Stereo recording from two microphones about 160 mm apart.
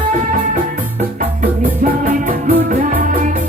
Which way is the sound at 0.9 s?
55° right (ahead or behind).